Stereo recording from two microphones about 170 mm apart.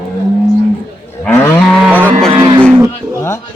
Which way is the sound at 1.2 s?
15° left (ahead or behind).